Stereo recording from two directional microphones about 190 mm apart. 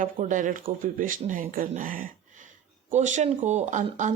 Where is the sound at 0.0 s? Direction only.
40° right (ahead or behind).